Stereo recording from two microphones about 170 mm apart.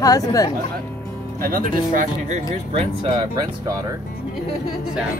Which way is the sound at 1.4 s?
55° right (ahead or behind).